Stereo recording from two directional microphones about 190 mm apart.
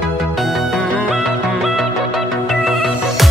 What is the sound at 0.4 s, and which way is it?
Music, centre (ahead or behind).